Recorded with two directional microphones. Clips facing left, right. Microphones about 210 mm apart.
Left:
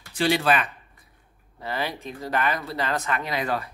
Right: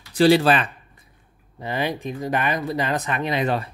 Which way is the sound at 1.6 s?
20° right (ahead or behind).